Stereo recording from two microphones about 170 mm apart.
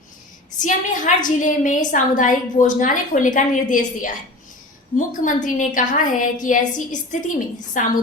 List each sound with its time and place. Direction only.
0.6 s a woman's voice: 45° left (ahead or behind)